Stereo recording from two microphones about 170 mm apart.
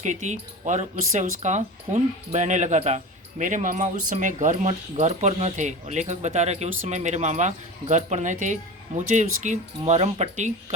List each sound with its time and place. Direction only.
0.0 s speech: 45° right (ahead or behind)